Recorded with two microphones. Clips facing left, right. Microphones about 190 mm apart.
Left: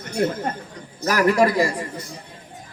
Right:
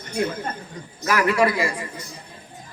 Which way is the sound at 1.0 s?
40° left (ahead or behind).